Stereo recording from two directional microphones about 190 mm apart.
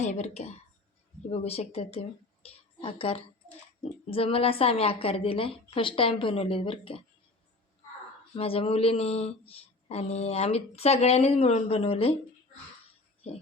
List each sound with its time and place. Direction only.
0.0 s a woman's voice: 35° left (ahead or behind)
8.4 s speech: 30° left (ahead or behind)